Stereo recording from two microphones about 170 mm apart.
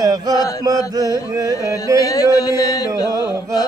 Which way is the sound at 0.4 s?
20° left (ahead or behind).